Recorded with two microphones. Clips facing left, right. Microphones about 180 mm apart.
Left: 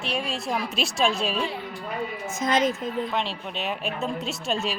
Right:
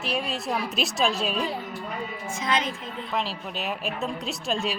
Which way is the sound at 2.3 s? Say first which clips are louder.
Left 4 dB; 45° left (ahead or behind).